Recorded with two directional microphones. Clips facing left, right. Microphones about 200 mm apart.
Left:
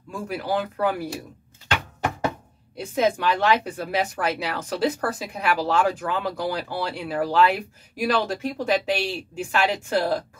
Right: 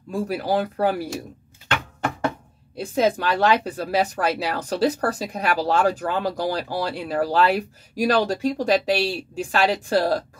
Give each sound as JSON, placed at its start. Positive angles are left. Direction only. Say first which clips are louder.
{"t": 0.1, "sound": "speech", "louder": "right 4 dB", "side_deg": -35}
{"t": 2.8, "sound": "speech", "louder": "right 1 dB", "side_deg": -35}